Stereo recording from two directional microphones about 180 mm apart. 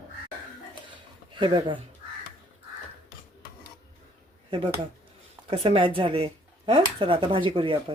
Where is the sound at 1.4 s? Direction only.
25° right (ahead or behind).